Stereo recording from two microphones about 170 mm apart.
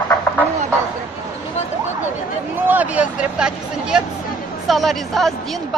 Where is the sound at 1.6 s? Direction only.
40° left (ahead or behind).